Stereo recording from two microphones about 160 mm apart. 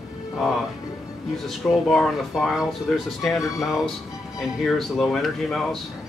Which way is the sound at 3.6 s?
Centre (ahead or behind).